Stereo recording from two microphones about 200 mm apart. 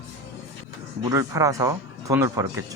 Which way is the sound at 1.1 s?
15° right (ahead or behind).